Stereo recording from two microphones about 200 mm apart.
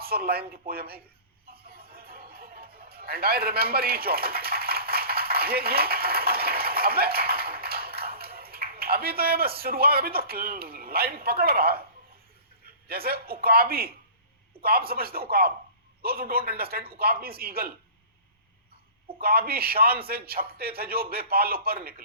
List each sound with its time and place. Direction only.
0.0 s a man's voice: 50° right (ahead or behind)
1.5 s music: 50° right (ahead or behind)
12.6 s a man's voice: 50° right (ahead or behind)
19.2 s a man's voice: 50° right (ahead or behind)